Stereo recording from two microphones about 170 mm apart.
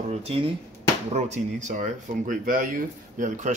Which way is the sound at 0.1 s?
35° right (ahead or behind).